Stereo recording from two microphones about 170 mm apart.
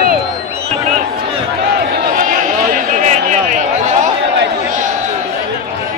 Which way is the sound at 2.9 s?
45° right (ahead or behind).